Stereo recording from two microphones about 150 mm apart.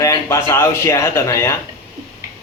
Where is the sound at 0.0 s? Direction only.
20° left (ahead or behind).